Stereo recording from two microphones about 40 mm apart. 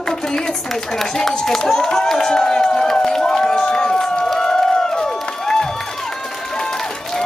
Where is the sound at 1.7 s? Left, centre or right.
Centre.